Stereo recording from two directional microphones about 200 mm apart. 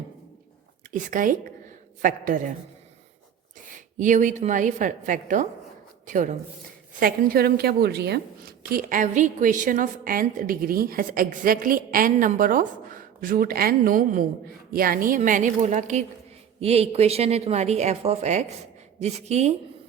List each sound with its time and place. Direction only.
0.9 s speech: 40° right (ahead or behind)
3.9 s a woman's voice: 40° right (ahead or behind)